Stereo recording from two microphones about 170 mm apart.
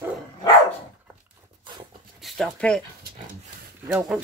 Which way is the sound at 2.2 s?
Centre (ahead or behind).